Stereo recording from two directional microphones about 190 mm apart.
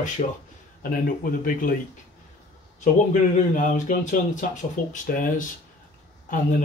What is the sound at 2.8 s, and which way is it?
Speech, 40° left (ahead or behind).